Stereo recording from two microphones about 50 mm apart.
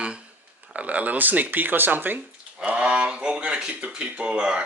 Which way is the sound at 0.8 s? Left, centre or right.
Right.